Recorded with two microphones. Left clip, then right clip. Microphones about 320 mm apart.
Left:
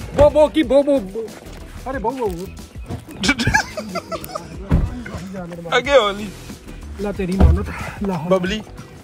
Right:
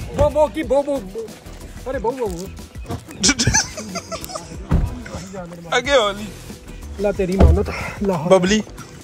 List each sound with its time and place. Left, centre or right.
0.1 s speech: centre
3.2 s a sound: centre
5.7 s speech: centre; by 8.6 s right